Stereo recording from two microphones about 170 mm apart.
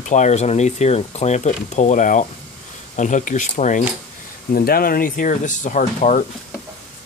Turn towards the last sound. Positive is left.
turn(degrees=45)  # may be behind; listen again after turning